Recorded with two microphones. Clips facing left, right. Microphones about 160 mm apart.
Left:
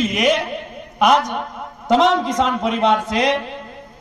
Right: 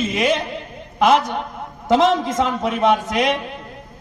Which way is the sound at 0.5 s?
15° left (ahead or behind).